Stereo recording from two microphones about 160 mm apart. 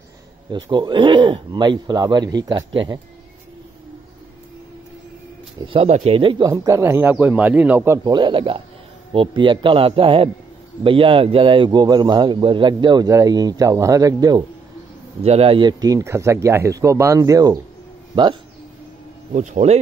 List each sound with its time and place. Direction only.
0.5 s a man's voice: 30° right (ahead or behind)
5.7 s a man's voice: 40° right (ahead or behind)
6.5 s speech: 15° right (ahead or behind)
8.1 s a man's voice: 30° right (ahead or behind)
15.2 s a man's voice: 40° right (ahead or behind)
19.3 s speech: 45° right (ahead or behind)